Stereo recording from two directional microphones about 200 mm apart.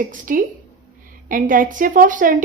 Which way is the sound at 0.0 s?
40° right (ahead or behind).